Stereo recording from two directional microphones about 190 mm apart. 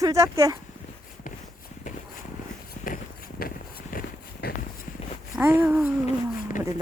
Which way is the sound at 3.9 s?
50° left (ahead or behind).